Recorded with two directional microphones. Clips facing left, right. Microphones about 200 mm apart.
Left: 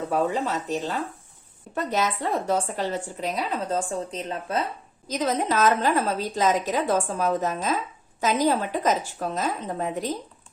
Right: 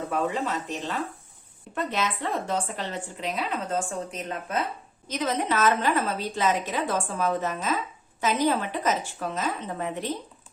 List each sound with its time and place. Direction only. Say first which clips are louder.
0.1 s a woman's voice: left 3 dB; 35° left (ahead or behind)